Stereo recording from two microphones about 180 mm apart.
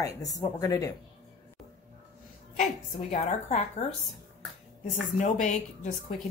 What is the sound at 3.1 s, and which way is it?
Speech, 40° left (ahead or behind).